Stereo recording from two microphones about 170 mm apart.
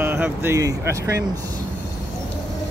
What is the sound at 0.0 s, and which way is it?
Speech, 10° right (ahead or behind).